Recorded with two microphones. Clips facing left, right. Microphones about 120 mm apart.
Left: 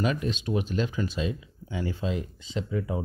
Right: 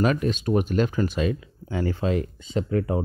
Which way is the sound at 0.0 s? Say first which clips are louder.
Right 5 dB; 50° right (ahead or behind).